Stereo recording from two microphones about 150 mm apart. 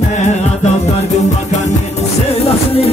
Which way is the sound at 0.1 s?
50° left (ahead or behind).